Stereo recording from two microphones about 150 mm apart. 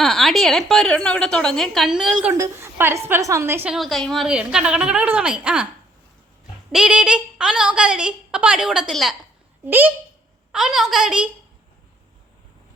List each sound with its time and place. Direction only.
0.0 s a sound: centre (ahead or behind)
0.7 s a woman's voice: 5° left (ahead or behind)
2.3 s a woman's voice: 20° right (ahead or behind)
3.7 s a woman's voice: centre (ahead or behind)
6.7 s a woman's voice: 5° right (ahead or behind)
9.6 s a woman's voice: 15° right (ahead or behind)